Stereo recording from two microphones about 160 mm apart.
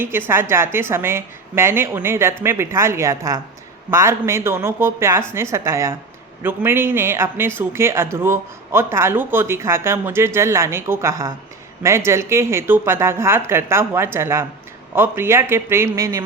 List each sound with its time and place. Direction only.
0.0 s speech: 15° right (ahead or behind)